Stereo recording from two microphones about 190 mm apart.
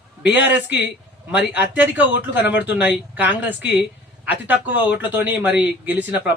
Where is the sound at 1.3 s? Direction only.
10° right (ahead or behind).